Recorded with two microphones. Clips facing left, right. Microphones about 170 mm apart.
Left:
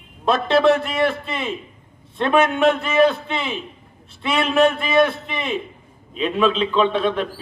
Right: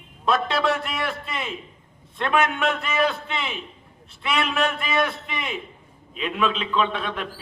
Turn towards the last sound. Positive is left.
turn(degrees=30)  # may be behind; listen again after turning